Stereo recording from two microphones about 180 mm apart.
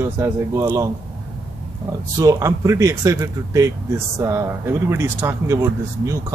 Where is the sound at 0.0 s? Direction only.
15° right (ahead or behind).